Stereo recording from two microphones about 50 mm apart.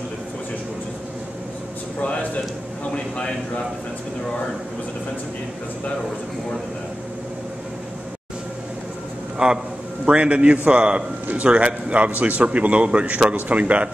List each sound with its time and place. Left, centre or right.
2.9 s a man's voice: centre
9.4 s a man's voice: centre